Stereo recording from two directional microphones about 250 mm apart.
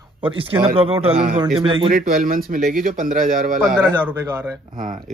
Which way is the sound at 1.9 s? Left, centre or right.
Right.